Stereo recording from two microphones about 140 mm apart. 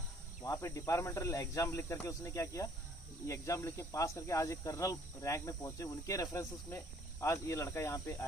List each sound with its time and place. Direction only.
0.4 s speech: 20° left (ahead or behind)